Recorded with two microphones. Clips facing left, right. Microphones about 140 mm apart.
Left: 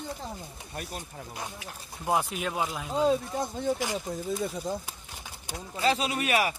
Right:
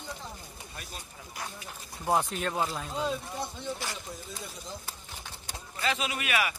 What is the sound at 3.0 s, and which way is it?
Speech, 45° left (ahead or behind).